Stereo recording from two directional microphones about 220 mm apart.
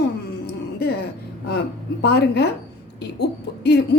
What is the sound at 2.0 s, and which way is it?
Speech, 45° left (ahead or behind).